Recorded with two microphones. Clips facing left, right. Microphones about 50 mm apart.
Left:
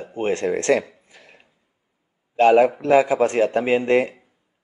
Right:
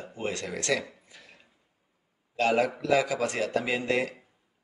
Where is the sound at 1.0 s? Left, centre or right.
Left.